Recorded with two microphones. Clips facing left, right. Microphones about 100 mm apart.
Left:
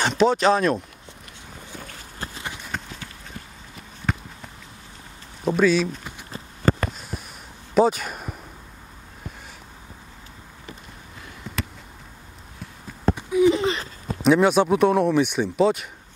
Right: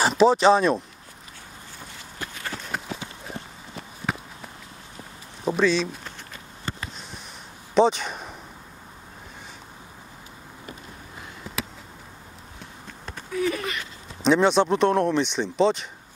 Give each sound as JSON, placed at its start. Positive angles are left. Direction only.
{"t": 0.0, "sound": "speech", "side_deg": 0}
{"t": 2.2, "sound": "clip-clop", "side_deg": 35}
{"t": 4.1, "sound": "run", "side_deg": -5}
{"t": 5.6, "sound": "speech", "side_deg": 5}
{"t": 6.6, "sound": "a sound", "side_deg": 55}
{"t": 7.7, "sound": "speech", "side_deg": 5}
{"t": 11.4, "sound": "a sound", "side_deg": -5}
{"t": 13.1, "sound": "a sound", "side_deg": 15}
{"t": 14.2, "sound": "speech", "side_deg": 5}